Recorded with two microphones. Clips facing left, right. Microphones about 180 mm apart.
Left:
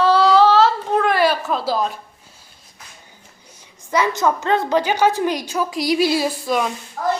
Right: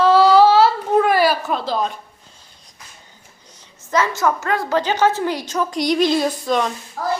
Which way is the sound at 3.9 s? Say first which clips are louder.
Even; 15° left (ahead or behind).